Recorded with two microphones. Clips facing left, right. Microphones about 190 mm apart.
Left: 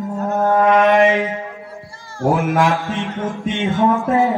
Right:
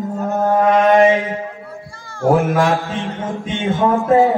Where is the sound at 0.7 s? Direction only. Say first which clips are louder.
Right 2 dB; 45° right (ahead or behind).